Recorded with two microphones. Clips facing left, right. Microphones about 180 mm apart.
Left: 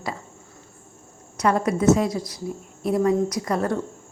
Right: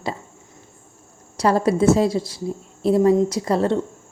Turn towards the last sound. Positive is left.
turn(degrees=-30)  # may be behind; listen again after turning